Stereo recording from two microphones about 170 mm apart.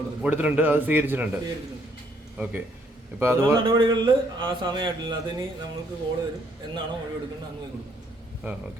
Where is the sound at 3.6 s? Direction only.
25° right (ahead or behind).